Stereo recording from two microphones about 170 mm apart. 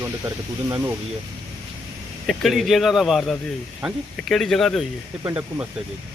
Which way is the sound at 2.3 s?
Centre (ahead or behind).